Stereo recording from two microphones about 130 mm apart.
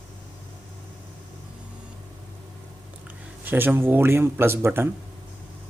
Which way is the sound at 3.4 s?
15° right (ahead or behind).